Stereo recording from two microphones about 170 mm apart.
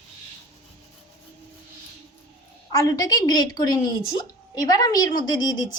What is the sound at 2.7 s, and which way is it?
A woman's voice, 20° left (ahead or behind).